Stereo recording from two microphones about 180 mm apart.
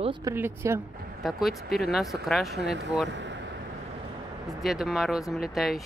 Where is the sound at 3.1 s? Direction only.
90° right.